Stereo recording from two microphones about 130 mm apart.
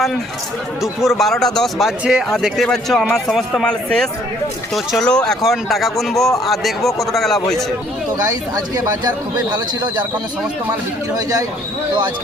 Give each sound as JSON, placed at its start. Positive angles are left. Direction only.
{"t": 0.8, "sound": "a man's voice", "side_deg": 0}
{"t": 8.3, "sound": "a man's voice", "side_deg": -25}